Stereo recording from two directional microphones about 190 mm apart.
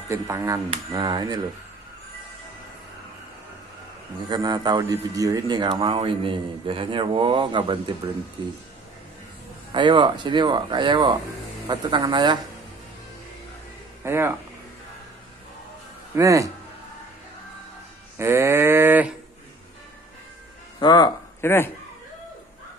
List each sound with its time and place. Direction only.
0.1 s livestock: 15° right (ahead or behind)
0.7 s a man's voice: 25° right (ahead or behind)
4.3 s a man's voice: 20° right (ahead or behind)
9.7 s a man's voice: 25° right (ahead or behind)
14.0 s livestock: 10° right (ahead or behind)
16.2 s livestock: 15° right (ahead or behind)
18.1 s livestock: 15° right (ahead or behind)
20.8 s speech: 20° left (ahead or behind)